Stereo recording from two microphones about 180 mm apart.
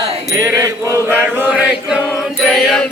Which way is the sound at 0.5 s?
15° right (ahead or behind).